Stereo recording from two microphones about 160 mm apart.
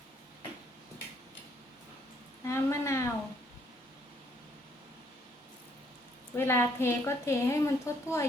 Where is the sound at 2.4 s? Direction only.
20° left (ahead or behind).